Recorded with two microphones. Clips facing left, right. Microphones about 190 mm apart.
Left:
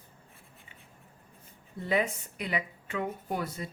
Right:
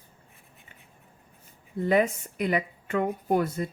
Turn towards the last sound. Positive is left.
turn(degrees=-50)  # may be behind; listen again after turning